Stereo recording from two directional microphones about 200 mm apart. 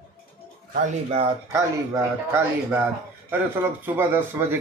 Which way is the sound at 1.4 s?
15° right (ahead or behind).